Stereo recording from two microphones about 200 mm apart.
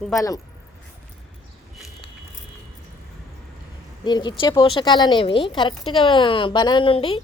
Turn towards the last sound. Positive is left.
turn(degrees=25)  # may be behind; listen again after turning